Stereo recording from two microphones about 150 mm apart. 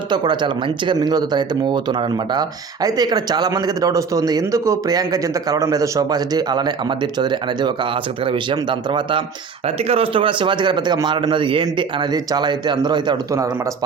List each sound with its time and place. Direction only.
0.1 s speech: 30° right (ahead or behind)
9.6 s speech: 40° right (ahead or behind); by 13.7 s 20° right (ahead or behind)